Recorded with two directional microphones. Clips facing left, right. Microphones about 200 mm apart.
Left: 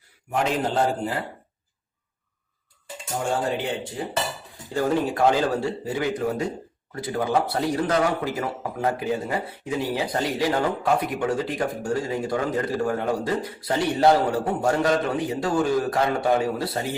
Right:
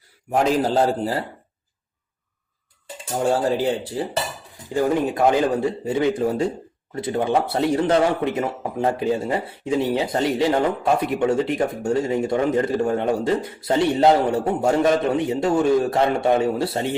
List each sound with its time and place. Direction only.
0.3 s a man's voice: 40° right (ahead or behind)
4.7 s a man's voice: 15° right (ahead or behind)